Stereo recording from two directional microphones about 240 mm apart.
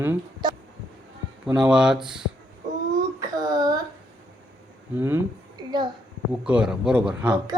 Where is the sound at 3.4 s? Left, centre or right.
Centre.